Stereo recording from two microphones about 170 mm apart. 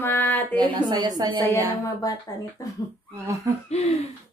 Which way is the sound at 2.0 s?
20° left (ahead or behind).